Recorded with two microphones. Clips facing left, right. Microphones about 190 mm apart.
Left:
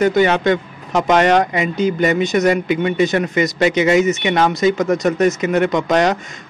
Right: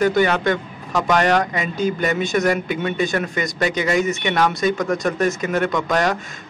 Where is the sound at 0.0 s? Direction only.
20° left (ahead or behind).